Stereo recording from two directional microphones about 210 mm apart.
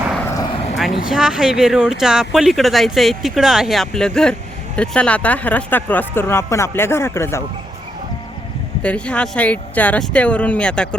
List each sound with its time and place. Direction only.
0.5 s a sound: 30° left (ahead or behind)
0.8 s speech: centre (ahead or behind)
8.8 s speech: 5° left (ahead or behind)